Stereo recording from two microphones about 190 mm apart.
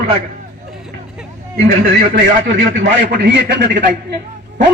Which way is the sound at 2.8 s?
65° right (ahead or behind).